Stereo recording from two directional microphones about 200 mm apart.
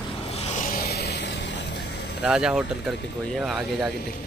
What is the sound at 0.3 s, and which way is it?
Vehicle, 30° left (ahead or behind).